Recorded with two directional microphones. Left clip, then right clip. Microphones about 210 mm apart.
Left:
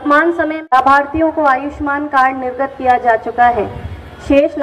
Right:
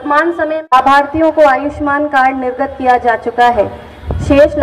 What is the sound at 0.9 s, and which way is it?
A woman's voice, 50° right (ahead or behind).